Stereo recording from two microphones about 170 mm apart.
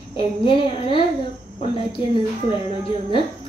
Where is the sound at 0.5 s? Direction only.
30° left (ahead or behind).